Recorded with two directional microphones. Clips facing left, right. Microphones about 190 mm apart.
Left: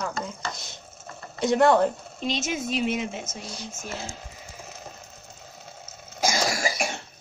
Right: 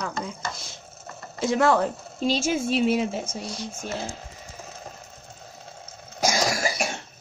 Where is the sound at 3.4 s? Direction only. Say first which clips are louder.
Right 4 dB; centre (ahead or behind).